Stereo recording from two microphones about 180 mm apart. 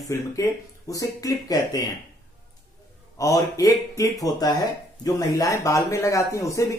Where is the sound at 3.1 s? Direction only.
20° left (ahead or behind).